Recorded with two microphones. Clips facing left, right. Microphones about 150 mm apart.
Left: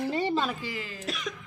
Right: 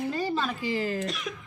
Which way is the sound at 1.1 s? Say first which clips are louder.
Even; centre (ahead or behind).